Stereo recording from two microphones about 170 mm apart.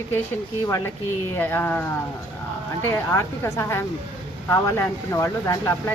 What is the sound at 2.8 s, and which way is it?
Speech, 15° left (ahead or behind).